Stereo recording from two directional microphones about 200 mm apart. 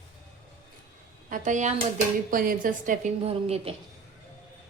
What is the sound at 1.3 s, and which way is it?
A woman's voice, 40° right (ahead or behind).